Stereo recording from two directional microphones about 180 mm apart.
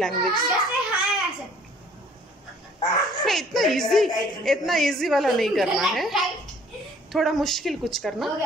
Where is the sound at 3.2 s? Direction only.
Centre (ahead or behind).